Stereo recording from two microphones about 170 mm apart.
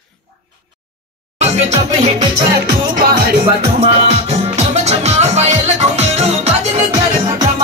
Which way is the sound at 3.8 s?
40° right (ahead or behind).